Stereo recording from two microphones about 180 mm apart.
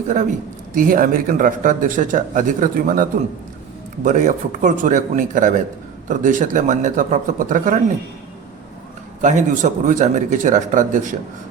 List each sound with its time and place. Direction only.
0.7 s speech: 50° right (ahead or behind)
9.2 s speech: 45° right (ahead or behind)